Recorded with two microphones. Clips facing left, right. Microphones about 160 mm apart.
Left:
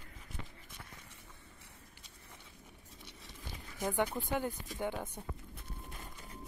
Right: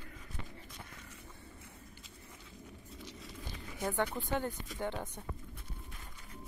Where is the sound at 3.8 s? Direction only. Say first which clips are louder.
Left 1 dB; 15° left (ahead or behind).